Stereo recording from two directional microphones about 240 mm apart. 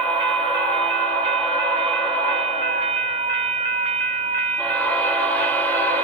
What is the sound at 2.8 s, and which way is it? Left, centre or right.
Train, right.